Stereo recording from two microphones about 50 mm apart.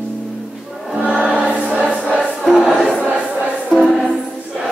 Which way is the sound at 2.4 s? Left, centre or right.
Centre.